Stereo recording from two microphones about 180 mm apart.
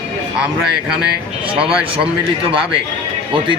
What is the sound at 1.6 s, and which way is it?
Speech, 30° right (ahead or behind).